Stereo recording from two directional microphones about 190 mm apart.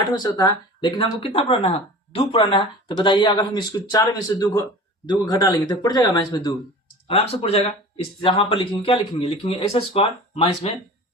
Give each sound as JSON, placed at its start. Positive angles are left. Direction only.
{"t": 0.1, "sound": "speech", "side_deg": 20}
{"t": 7.1, "sound": "speech", "side_deg": 30}